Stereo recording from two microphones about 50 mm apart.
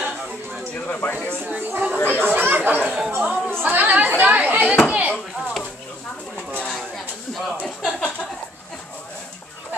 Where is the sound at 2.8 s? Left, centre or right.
Centre.